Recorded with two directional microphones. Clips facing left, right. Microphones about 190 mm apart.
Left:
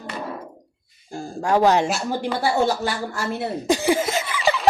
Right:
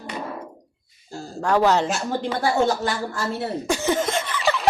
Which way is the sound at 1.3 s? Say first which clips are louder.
Left 1 dB; 10° left (ahead or behind).